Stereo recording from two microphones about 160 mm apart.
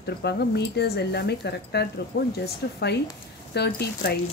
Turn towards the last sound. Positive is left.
turn(degrees=85)